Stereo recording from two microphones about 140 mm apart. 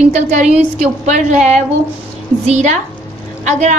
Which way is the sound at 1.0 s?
55° right (ahead or behind).